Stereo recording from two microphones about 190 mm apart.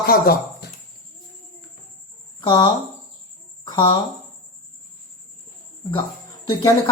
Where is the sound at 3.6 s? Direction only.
25° left (ahead or behind).